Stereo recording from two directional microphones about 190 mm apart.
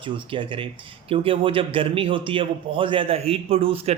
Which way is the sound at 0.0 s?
25° right (ahead or behind).